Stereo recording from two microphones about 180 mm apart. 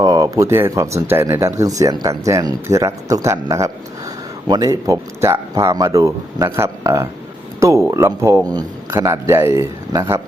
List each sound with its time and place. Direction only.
0.0 s speech: 20° right (ahead or behind)